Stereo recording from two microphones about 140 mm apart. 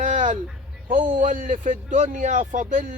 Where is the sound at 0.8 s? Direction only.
75° right (ahead or behind).